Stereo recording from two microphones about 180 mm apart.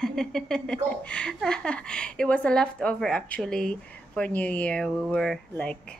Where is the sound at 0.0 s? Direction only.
Centre (ahead or behind).